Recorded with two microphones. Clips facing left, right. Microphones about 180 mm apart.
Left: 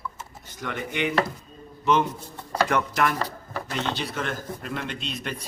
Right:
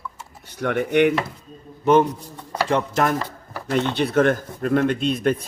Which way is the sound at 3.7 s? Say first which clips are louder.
Right 9 dB; 55° right (ahead or behind).